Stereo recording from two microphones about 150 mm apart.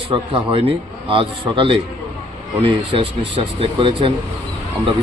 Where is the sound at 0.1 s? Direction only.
35° right (ahead or behind).